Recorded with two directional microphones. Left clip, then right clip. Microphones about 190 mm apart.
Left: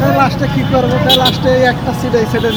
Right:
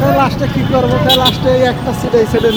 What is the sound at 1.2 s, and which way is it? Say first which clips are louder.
Speech: even; 15° right (ahead or behind).